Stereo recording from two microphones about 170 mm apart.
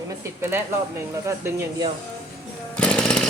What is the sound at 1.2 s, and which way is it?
Speech, 15° right (ahead or behind).